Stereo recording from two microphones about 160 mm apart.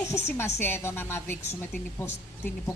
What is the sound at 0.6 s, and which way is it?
Speech, 15° left (ahead or behind).